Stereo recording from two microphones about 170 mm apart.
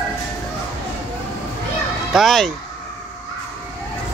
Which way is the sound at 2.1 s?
Centre (ahead or behind).